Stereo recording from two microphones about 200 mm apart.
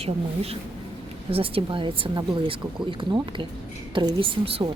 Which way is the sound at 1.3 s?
25° right (ahead or behind).